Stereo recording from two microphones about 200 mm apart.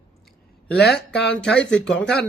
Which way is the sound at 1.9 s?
55° left (ahead or behind).